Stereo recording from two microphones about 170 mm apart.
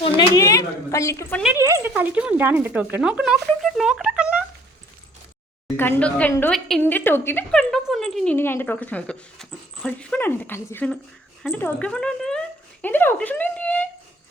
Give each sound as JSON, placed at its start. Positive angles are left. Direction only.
{"t": 0.0, "sound": "a woman's voice", "side_deg": 25}
{"t": 1.5, "sound": "speech", "side_deg": -15}
{"t": 5.7, "sound": "a woman's voice", "side_deg": 10}